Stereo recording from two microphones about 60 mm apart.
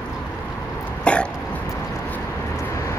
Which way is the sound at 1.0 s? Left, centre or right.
Centre.